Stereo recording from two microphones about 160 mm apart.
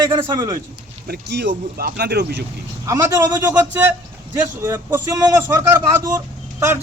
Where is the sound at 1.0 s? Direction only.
85° right.